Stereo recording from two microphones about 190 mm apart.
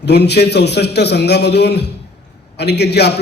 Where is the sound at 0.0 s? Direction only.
60° left (ahead or behind).